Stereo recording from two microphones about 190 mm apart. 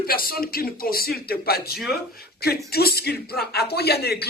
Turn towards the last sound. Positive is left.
turn(degrees=55)  # may be behind; listen again after turning